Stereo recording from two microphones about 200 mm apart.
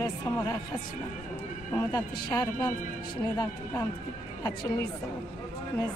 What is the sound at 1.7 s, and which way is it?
A man's voice, 15° left (ahead or behind).